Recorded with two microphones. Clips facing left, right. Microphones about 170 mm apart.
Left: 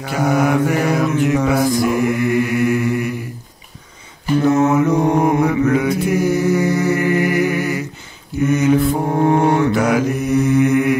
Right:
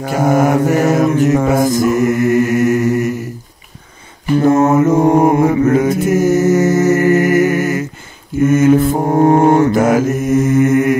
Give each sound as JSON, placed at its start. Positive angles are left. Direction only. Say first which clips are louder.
{"t": 0.0, "sound": "mantra", "louder": "right 4 dB", "side_deg": -45}
{"t": 4.4, "sound": "mantra", "louder": "right 3 dB", "side_deg": -45}